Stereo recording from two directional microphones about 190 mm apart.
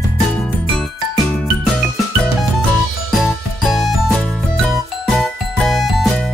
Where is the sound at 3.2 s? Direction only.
Centre (ahead or behind).